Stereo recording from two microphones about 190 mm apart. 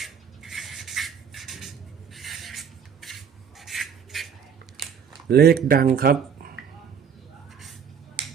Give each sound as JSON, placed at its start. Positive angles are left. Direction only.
{"t": 0.0, "sound": "music", "side_deg": 0}
{"t": 2.1, "sound": "rub", "side_deg": 0}
{"t": 5.3, "sound": "speech", "side_deg": -55}